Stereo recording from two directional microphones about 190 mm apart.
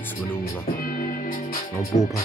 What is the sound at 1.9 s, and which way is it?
Speech, 15° left (ahead or behind).